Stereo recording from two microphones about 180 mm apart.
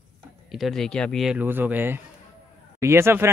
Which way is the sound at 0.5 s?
Centre (ahead or behind).